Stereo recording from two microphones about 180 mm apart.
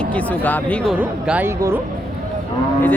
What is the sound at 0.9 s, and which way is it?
Speech, 5° right (ahead or behind).